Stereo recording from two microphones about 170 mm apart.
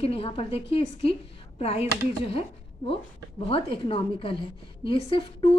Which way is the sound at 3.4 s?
35° left (ahead or behind).